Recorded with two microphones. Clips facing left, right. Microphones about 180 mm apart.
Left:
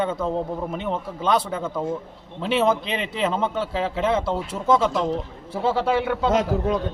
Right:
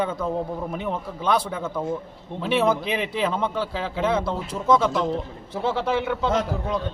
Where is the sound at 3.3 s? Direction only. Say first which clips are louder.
Left 1 dB; 25° left (ahead or behind).